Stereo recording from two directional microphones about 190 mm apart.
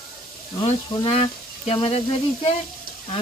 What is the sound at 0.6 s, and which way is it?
Speech, 30° left (ahead or behind).